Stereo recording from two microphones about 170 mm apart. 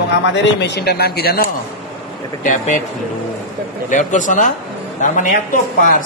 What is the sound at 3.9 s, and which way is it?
A woman's voice, 45° left (ahead or behind).